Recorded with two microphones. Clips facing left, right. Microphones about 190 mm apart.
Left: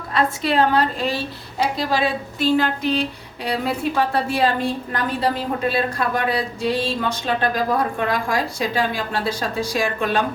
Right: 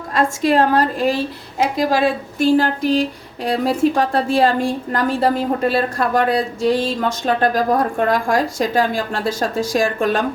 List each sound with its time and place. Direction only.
0.1 s a woman's voice: 45° right (ahead or behind)